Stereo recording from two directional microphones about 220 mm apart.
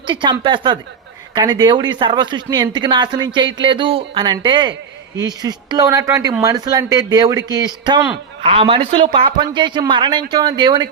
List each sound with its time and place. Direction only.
0.1 s a man's voice: 20° right (ahead or behind)